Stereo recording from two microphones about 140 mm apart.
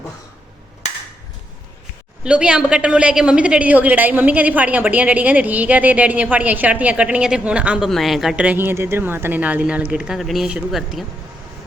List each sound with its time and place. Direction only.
2.2 s a woman's voice: 5° right (ahead or behind)